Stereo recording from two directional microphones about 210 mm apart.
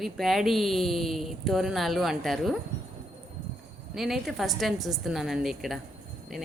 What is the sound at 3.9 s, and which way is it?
A woman's voice, centre (ahead or behind).